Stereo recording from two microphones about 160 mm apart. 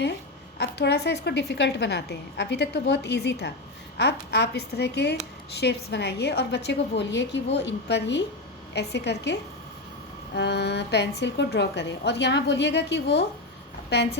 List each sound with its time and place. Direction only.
0.6 s a woman's voice: 90° left